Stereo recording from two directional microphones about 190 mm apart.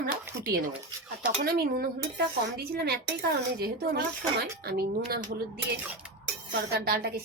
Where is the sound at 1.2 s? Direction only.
55° right (ahead or behind).